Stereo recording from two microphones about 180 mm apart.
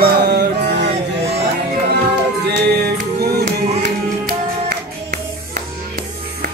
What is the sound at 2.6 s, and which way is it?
Music, 60° right (ahead or behind).